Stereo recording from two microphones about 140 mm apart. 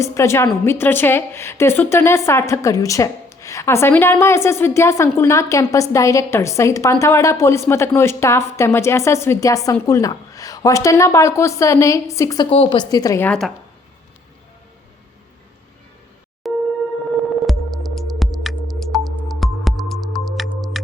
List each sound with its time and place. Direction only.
0.0 s a woman's voice: 20° left (ahead or behind)
12.5 s speech: 45° left (ahead or behind)
12.8 s a woman's voice: 25° left (ahead or behind)
13.2 s speech: 5° left (ahead or behind)
16.4 s a sound: centre (ahead or behind)
17.4 s music: centre (ahead or behind)